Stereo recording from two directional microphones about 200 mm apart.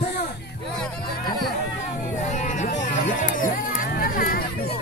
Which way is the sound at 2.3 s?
40° left (ahead or behind).